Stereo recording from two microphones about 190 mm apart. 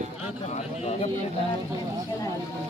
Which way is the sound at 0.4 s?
35° left (ahead or behind).